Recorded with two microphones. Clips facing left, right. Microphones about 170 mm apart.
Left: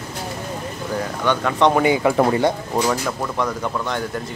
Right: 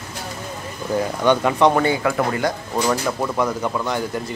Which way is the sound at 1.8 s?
25° left (ahead or behind).